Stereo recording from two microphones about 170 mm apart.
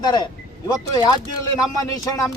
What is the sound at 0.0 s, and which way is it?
A man's voice, 25° left (ahead or behind).